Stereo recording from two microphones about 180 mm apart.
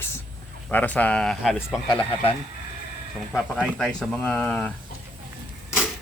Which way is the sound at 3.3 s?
5° left (ahead or behind).